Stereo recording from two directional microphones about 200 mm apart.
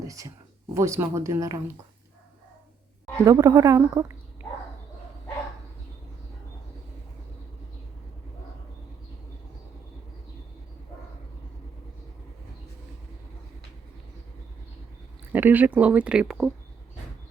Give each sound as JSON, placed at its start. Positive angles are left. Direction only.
{"t": 0.1, "sound": "speech", "side_deg": -15}
{"t": 3.2, "sound": "speech", "side_deg": -20}
{"t": 15.3, "sound": "speech", "side_deg": -10}